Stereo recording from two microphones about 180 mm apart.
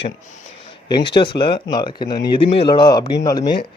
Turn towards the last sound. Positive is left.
turn(degrees=20)  # may be behind; listen again after turning